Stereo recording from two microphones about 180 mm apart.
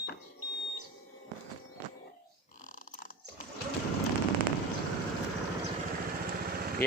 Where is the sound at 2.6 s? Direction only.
50° left (ahead or behind).